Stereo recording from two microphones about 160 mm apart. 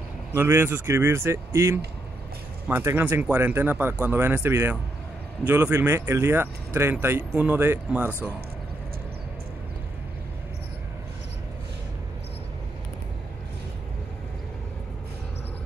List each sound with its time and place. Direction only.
0.3 s speech: 15° right (ahead or behind)